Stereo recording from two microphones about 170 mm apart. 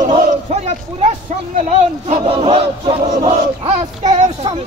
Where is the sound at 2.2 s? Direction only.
35° right (ahead or behind).